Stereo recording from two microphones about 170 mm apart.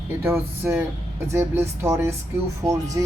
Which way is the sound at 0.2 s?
15° right (ahead or behind).